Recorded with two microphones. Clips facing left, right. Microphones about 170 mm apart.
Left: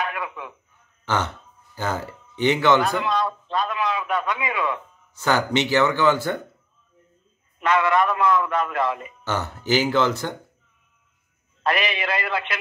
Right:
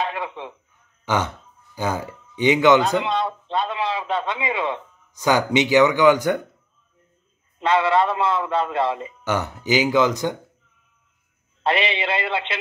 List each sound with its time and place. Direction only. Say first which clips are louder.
0.0 s a sound: right 2 dB; 25° right (ahead or behind)
1.0 s throat clearing: right 2 dB; 15° right (ahead or behind)
1.8 s speech: right 2 dB; 15° right (ahead or behind)
5.1 s speech: right 3 dB; 15° right (ahead or behind)
7.5 s a man's voice: right 1 dB; 30° right (ahead or behind)
9.2 s speech: right 3 dB; 15° right (ahead or behind)
11.6 s a man's voice: right 2 dB; 25° right (ahead or behind)